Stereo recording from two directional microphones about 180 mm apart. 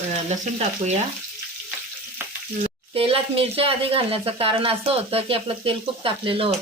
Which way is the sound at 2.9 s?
30° right (ahead or behind).